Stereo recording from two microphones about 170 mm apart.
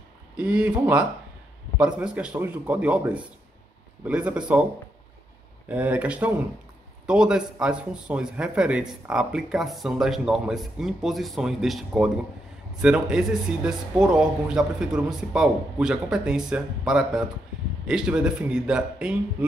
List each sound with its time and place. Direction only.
0.4 s speech: 5° right (ahead or behind)
5.7 s a man's voice: 10° right (ahead or behind)